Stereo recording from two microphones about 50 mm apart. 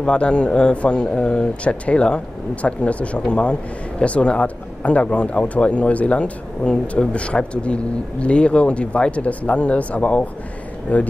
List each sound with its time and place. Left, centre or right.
0.0 s speech: left